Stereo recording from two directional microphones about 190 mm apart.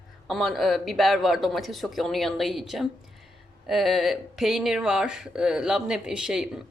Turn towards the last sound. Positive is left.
turn(degrees=-5)  # may be behind; listen again after turning